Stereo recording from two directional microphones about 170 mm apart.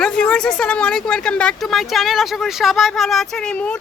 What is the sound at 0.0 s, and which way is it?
Speech, 5° left (ahead or behind).